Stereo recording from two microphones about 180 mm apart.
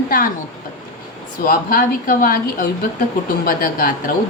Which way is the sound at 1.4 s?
50° left (ahead or behind).